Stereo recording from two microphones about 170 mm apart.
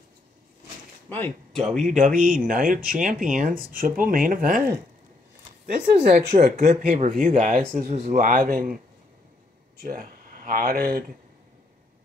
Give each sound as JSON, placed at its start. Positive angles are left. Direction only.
{"t": 1.0, "sound": "speech", "side_deg": 10}
{"t": 1.8, "sound": "speech", "side_deg": -45}
{"t": 6.0, "sound": "speech", "side_deg": -55}
{"t": 9.8, "sound": "speech", "side_deg": -55}